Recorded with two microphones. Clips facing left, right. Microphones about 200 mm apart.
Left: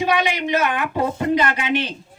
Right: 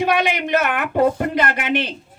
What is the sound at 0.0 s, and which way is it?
Speech, 55° right (ahead or behind).